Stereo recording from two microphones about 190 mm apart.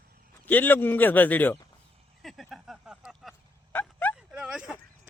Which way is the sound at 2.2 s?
Centre (ahead or behind).